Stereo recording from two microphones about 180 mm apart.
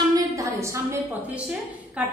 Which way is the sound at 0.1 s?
15° right (ahead or behind).